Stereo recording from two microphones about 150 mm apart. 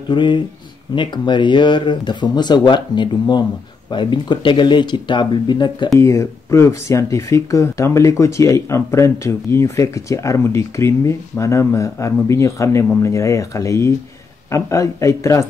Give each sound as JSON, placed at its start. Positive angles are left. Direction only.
{"t": 0.1, "sound": "speech", "side_deg": 30}
{"t": 5.9, "sound": "speech", "side_deg": 20}